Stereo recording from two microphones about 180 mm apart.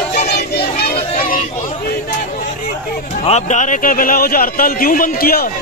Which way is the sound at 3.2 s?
40° left (ahead or behind).